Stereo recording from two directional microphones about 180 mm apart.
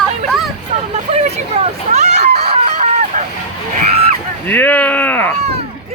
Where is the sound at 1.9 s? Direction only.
40° right (ahead or behind).